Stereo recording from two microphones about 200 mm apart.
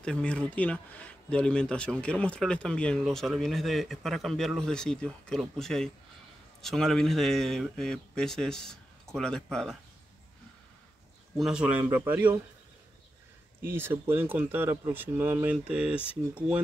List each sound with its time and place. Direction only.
0.0 s speech: 5° left (ahead or behind)
11.3 s speech: 5° right (ahead or behind)
13.7 s speech: 10° right (ahead or behind)